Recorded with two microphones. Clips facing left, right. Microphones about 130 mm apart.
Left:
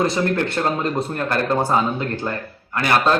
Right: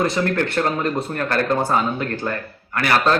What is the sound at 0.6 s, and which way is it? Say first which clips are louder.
A man's voice: even; 10° left (ahead or behind).